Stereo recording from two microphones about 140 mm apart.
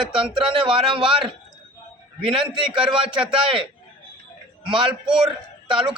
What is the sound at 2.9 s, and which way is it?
A man's voice, 40° right (ahead or behind).